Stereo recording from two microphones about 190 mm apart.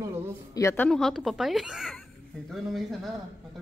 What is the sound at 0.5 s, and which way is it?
A woman's voice, 10° left (ahead or behind).